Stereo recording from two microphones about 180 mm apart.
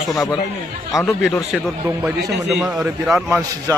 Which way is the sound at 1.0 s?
Centre (ahead or behind).